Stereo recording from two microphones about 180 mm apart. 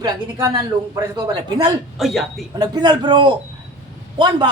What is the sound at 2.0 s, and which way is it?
Speech, centre (ahead or behind).